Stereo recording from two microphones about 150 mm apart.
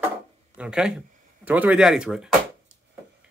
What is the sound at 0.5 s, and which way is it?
Speech, 5° right (ahead or behind).